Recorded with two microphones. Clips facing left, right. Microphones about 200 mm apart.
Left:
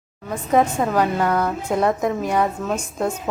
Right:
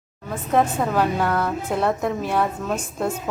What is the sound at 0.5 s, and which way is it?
A woman's voice, centre (ahead or behind).